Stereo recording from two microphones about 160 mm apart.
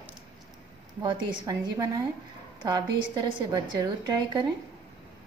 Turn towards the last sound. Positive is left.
turn(degrees=-25)  # may be behind; listen again after turning